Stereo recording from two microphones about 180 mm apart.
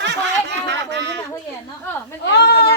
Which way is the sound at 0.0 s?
75° right (ahead or behind).